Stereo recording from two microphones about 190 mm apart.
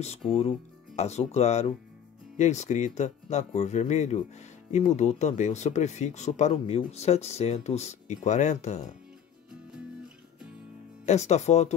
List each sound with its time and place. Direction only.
0.9 s speech: 35° left (ahead or behind)
9.7 s music: 5° right (ahead or behind)
11.1 s speech: 35° left (ahead or behind)